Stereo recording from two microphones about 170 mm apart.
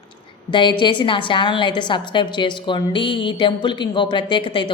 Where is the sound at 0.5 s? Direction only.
25° left (ahead or behind).